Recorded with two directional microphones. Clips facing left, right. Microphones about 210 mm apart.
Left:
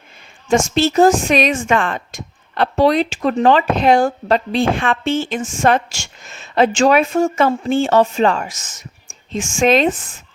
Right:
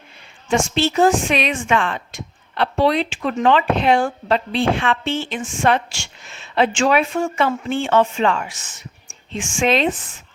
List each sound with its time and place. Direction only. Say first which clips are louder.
0.4 s speech: left 4 dB; 45° left (ahead or behind)